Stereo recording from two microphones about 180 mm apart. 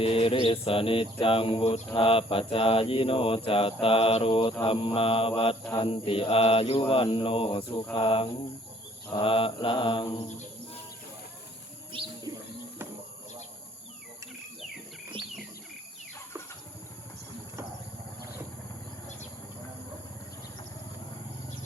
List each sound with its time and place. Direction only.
0.0 s speech: 30° left (ahead or behind)
7.9 s mantra: 30° left (ahead or behind)
11.9 s bird: 30° right (ahead or behind)